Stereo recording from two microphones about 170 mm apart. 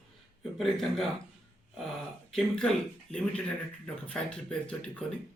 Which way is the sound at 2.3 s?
5° left (ahead or behind).